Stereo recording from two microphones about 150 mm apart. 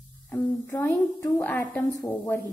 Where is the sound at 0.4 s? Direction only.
15° left (ahead or behind).